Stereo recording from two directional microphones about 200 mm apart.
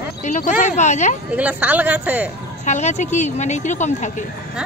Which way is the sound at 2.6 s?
35° left (ahead or behind).